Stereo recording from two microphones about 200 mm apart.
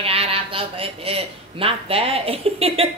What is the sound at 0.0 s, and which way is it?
A man's voice, 30° right (ahead or behind).